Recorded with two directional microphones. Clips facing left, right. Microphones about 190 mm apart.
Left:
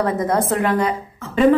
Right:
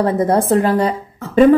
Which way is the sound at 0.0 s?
30° right (ahead or behind).